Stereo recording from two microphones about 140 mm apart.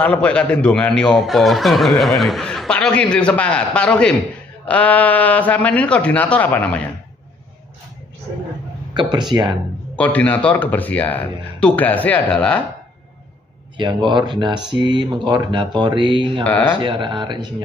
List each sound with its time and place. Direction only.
0.0 s a man's voice: 10° left (ahead or behind)
8.9 s speech: 35° right (ahead or behind)
9.9 s a man's voice: 10° left (ahead or behind)
13.7 s speech: 35° right (ahead or behind)
16.4 s a man's voice: 10° left (ahead or behind)
16.7 s speech: 35° right (ahead or behind)